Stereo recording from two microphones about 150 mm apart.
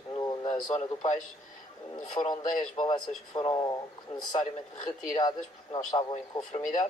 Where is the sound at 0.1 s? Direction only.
30° left (ahead or behind).